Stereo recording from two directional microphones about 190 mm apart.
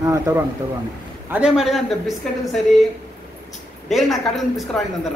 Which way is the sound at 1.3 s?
5° right (ahead or behind).